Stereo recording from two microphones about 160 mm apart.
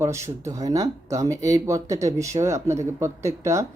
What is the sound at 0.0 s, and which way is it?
Speech, 15° right (ahead or behind).